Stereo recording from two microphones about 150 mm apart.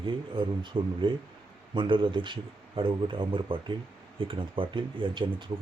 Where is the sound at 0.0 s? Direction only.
35° right (ahead or behind).